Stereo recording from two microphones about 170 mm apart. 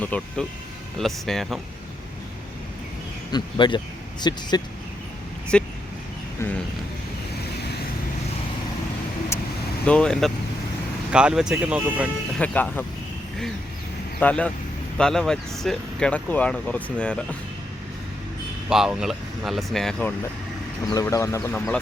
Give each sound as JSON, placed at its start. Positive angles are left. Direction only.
{"t": 0.0, "sound": "speech", "side_deg": 10}
{"t": 3.3, "sound": "speech", "side_deg": 25}
{"t": 5.5, "sound": "speech", "side_deg": 5}
{"t": 9.3, "sound": "vehicle", "side_deg": 15}
{"t": 9.8, "sound": "speech", "side_deg": 5}
{"t": 12.4, "sound": "speech", "side_deg": 10}
{"t": 14.2, "sound": "speech", "side_deg": 10}
{"t": 18.7, "sound": "speech", "side_deg": -5}
{"t": 20.9, "sound": "speech", "side_deg": 20}